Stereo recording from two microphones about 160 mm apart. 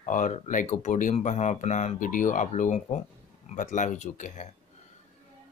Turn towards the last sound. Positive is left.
turn(degrees=50)  # may be behind; listen again after turning